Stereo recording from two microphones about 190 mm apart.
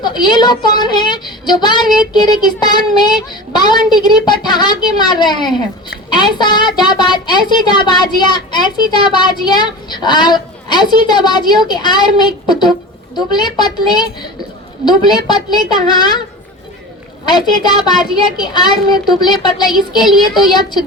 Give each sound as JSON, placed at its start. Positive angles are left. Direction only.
{"t": 0.0, "sound": "speech", "side_deg": 25}
{"t": 17.2, "sound": "speech", "side_deg": 20}